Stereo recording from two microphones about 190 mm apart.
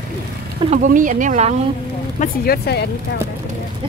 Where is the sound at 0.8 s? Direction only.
45° right (ahead or behind).